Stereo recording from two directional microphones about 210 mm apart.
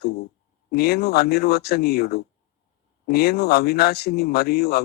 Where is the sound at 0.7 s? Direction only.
50° left (ahead or behind).